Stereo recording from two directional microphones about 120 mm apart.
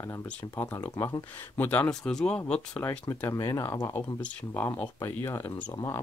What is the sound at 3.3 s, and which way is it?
Speech, 25° left (ahead or behind).